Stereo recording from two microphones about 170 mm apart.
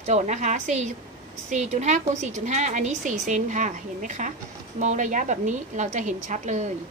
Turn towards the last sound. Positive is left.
turn(degrees=-45)  # may be behind; listen again after turning